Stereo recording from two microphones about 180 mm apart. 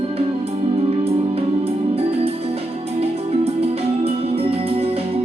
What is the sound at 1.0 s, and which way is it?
Music, 30° right (ahead or behind).